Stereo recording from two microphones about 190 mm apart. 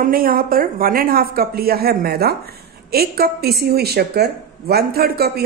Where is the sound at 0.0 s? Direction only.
50° right (ahead or behind).